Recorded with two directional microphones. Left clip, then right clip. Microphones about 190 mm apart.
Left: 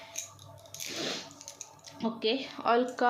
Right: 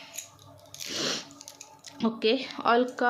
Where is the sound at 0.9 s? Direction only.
30° right (ahead or behind).